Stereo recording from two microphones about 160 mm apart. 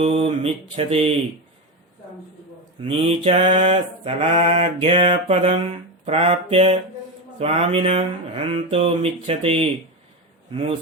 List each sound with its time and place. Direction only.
0.0 s mantra: 35° right (ahead or behind)
2.8 s mantra: 40° right (ahead or behind)